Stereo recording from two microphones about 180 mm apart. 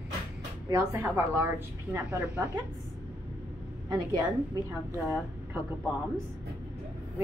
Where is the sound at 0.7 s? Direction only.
15° right (ahead or behind).